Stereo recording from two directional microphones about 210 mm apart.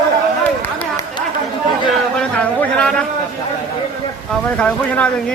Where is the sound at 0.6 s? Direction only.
10° left (ahead or behind).